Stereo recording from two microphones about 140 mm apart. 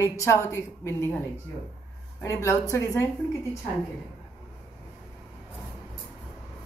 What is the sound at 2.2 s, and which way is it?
Speech, 20° left (ahead or behind).